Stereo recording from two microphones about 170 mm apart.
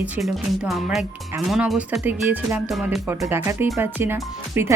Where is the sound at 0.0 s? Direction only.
Centre (ahead or behind).